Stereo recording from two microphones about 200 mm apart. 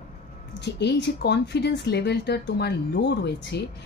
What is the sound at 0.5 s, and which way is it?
Speech, 60° left (ahead or behind).